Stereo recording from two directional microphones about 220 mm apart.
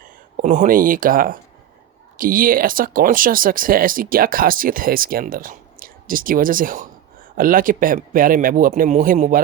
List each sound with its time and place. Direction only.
0.0 s speech: 35° right (ahead or behind)